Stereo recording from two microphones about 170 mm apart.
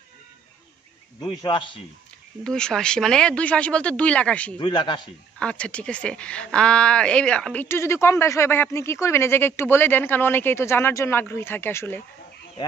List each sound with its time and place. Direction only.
1.4 s a man's voice: 30° left (ahead or behind)
2.4 s speech: 5° left (ahead or behind)
4.6 s a man's voice: 30° left (ahead or behind)
5.4 s speech: 5° left (ahead or behind)